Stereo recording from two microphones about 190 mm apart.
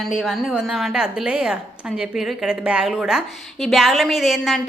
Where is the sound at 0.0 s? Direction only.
Centre (ahead or behind).